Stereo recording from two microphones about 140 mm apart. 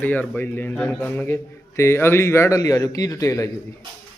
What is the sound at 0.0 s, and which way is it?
A man's voice, 10° left (ahead or behind).